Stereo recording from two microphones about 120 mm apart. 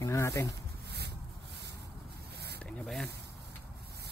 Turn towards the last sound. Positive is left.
turn(degrees=5)  # may be behind; listen again after turning